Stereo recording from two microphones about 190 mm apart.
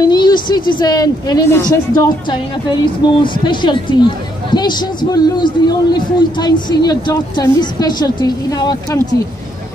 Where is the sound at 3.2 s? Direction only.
25° left (ahead or behind).